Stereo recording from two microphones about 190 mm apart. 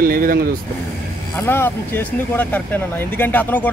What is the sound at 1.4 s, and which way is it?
Speech, 10° left (ahead or behind).